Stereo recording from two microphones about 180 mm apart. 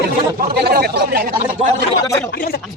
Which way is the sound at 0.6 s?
60° right (ahead or behind).